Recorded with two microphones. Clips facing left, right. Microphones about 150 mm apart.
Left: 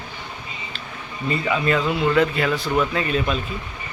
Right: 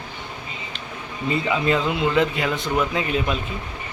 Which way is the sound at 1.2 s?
20° right (ahead or behind).